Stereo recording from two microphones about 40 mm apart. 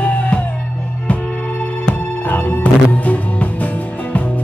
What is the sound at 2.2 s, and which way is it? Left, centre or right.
Music, left.